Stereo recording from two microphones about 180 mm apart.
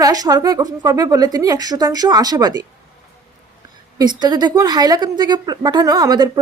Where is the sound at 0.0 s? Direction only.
20° right (ahead or behind).